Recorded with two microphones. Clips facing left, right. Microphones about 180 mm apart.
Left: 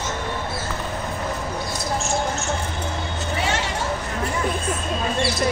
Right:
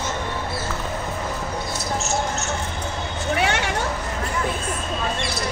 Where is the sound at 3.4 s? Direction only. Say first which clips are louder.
Right 1 dB; 60° right (ahead or behind).